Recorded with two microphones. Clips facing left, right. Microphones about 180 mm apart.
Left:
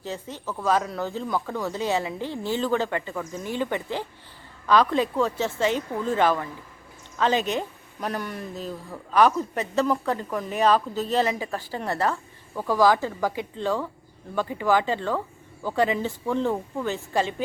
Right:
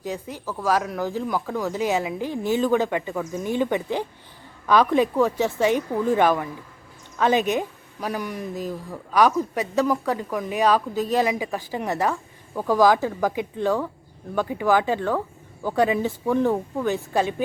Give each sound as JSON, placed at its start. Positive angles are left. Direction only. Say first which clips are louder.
{"t": 0.0, "sound": "speech", "louder": "right 3 dB", "side_deg": -10}